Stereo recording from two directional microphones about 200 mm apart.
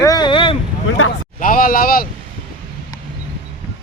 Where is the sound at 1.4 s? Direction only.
45° left (ahead or behind).